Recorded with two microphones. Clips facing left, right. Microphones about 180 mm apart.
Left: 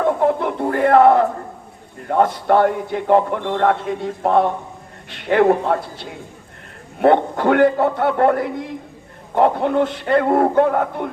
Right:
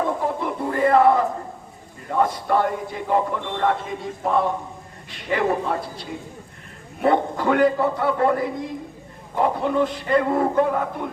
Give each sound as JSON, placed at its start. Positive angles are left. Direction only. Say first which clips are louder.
{"t": 0.2, "sound": "a sound", "louder": "left 7 dB", "side_deg": 65}
{"t": 2.0, "sound": "a man's voice", "louder": "left 5 dB", "side_deg": 65}
{"t": 7.0, "sound": "a man's voice", "louder": "left 5 dB", "side_deg": 60}